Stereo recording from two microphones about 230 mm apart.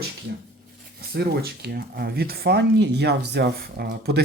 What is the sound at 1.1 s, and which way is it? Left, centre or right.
Speech, right.